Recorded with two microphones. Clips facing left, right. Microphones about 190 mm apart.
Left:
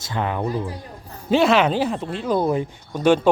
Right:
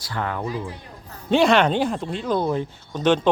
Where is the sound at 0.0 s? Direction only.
20° left (ahead or behind).